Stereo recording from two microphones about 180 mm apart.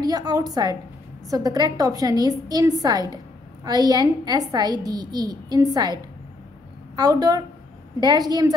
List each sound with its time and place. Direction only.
0.0 s a woman's voice: 20° right (ahead or behind)
7.0 s a woman's voice: 20° right (ahead or behind)